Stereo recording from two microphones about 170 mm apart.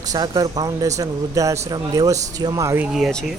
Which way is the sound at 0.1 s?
20° right (ahead or behind).